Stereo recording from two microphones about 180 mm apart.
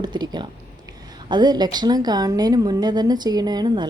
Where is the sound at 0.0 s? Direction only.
25° right (ahead or behind).